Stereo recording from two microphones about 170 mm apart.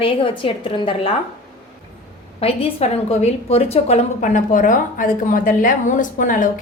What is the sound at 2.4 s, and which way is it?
A woman's voice, 35° left (ahead or behind).